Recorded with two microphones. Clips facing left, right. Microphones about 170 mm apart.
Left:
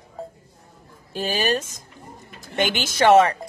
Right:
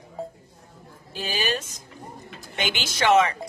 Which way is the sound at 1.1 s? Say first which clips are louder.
Left 5 dB; 50° left (ahead or behind).